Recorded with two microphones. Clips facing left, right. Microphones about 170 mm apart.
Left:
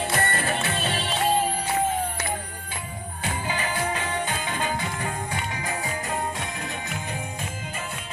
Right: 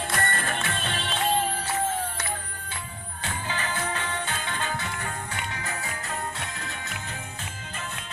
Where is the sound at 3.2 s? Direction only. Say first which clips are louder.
Left 3 dB; 10° left (ahead or behind).